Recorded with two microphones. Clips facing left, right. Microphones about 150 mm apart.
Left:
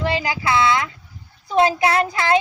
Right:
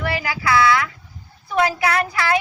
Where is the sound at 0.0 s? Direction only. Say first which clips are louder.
Left 2 dB; 20° left (ahead or behind).